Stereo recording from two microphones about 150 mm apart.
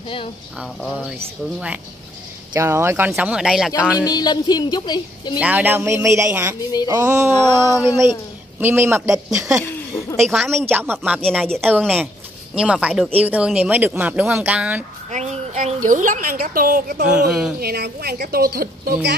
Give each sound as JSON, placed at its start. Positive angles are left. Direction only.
{"t": 0.7, "sound": "speech", "side_deg": 0}
{"t": 2.5, "sound": "speech", "side_deg": -15}
{"t": 3.2, "sound": "speech", "side_deg": -5}
{"t": 4.0, "sound": "a woman's voice", "side_deg": 25}
{"t": 5.4, "sound": "speech", "side_deg": -10}
{"t": 7.3, "sound": "a woman's voice", "side_deg": 25}
{"t": 7.7, "sound": "speech", "side_deg": -20}
{"t": 10.2, "sound": "speech", "side_deg": 0}
{"t": 10.5, "sound": "speech", "side_deg": -15}
{"t": 11.1, "sound": "speech", "side_deg": 5}
{"t": 15.0, "sound": "a woman's voice", "side_deg": -50}
{"t": 17.3, "sound": "speech", "side_deg": -5}
{"t": 17.6, "sound": "a woman's voice", "side_deg": -90}